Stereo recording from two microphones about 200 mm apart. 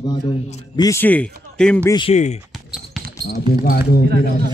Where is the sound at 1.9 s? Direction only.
25° left (ahead or behind).